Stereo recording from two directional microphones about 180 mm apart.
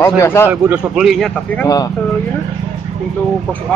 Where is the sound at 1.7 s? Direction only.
20° left (ahead or behind).